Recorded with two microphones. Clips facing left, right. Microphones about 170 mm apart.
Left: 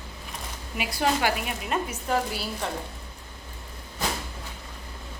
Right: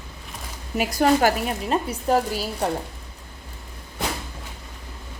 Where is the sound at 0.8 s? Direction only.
45° right (ahead or behind).